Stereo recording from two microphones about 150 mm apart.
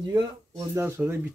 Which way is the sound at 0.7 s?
15° right (ahead or behind).